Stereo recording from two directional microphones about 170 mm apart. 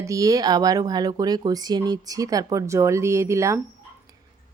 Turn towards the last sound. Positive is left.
turn(degrees=-15)  # may be behind; listen again after turning